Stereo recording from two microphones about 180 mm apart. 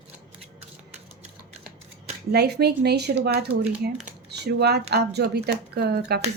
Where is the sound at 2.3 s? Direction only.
65° right (ahead or behind).